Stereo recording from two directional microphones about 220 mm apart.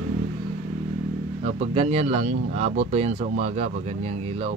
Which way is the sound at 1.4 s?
30° right (ahead or behind).